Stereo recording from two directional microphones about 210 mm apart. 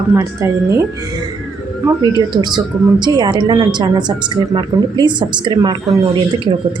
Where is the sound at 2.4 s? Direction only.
20° right (ahead or behind).